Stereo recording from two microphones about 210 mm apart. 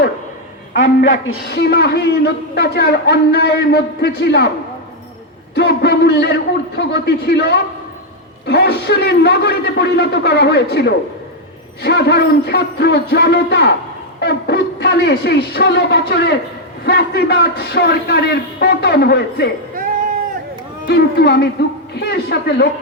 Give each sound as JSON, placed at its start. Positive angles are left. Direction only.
{"t": 0.7, "sound": "a man's voice", "side_deg": 65}
{"t": 5.5, "sound": "a man's voice", "side_deg": 50}
{"t": 20.8, "sound": "a man's voice", "side_deg": 50}